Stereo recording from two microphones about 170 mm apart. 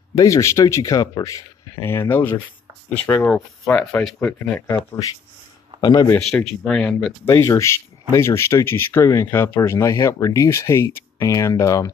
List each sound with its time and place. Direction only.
0.1 s speech: 20° left (ahead or behind)
4.6 s a man's voice: 20° left (ahead or behind)
6.6 s speech: 5° left (ahead or behind)
7.2 s speech: 15° left (ahead or behind)